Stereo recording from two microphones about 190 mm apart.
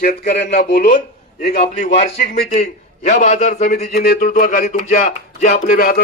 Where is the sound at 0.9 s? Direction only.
35° left (ahead or behind).